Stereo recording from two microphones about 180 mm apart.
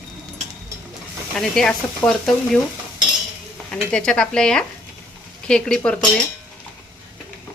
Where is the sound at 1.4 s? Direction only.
Centre (ahead or behind).